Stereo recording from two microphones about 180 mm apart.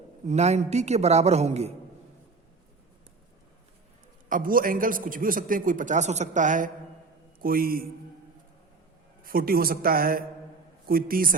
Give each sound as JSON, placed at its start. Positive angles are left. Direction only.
{"t": 0.3, "sound": "a woman's voice", "side_deg": -40}
{"t": 4.3, "sound": "a man's voice", "side_deg": -50}
{"t": 9.2, "sound": "a man's voice", "side_deg": -55}